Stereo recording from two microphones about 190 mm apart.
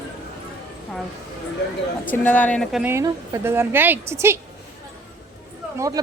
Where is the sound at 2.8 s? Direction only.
15° right (ahead or behind).